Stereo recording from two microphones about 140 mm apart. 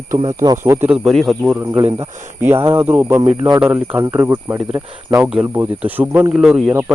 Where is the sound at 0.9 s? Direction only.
Centre (ahead or behind).